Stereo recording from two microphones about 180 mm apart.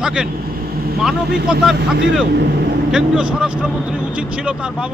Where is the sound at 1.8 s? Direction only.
70° right (ahead or behind).